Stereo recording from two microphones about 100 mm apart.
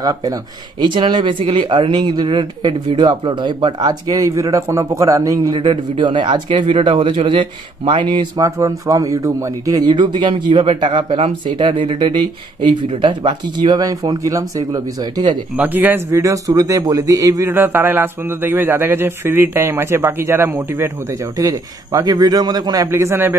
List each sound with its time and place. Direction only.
0.0 s speech: 35° right (ahead or behind)
0.8 s speech: 50° right (ahead or behind)
5.6 s speech: 55° right (ahead or behind)
8.5 s speech: 30° right (ahead or behind)
15.5 s speech: 15° right (ahead or behind)
16.1 s speech: 30° right (ahead or behind)
17.5 s speech: 20° right (ahead or behind)
21.4 s speech: 35° right (ahead or behind)
22.8 s speech: 25° right (ahead or behind)